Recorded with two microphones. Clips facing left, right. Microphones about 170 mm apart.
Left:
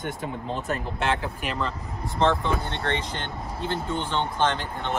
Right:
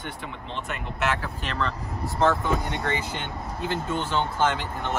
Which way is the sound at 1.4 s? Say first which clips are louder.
Even; 10° left (ahead or behind).